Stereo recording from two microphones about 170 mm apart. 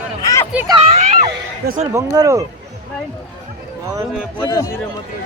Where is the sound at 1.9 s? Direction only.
20° right (ahead or behind).